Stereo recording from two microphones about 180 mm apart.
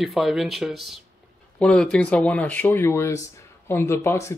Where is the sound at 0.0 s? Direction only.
Centre (ahead or behind).